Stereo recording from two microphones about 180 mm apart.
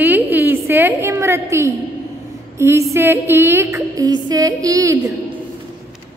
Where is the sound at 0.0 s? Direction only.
10° right (ahead or behind).